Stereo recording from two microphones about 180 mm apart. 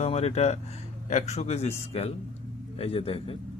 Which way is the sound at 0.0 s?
35° left (ahead or behind).